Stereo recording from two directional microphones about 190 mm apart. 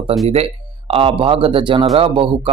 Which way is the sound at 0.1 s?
30° right (ahead or behind).